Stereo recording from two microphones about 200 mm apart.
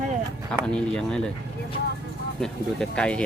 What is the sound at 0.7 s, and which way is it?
Speech, 5° left (ahead or behind).